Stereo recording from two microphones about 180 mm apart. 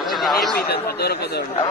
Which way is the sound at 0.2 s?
Centre (ahead or behind).